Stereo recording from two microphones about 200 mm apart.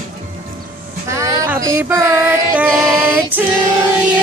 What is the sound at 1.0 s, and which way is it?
Music, 15° right (ahead or behind).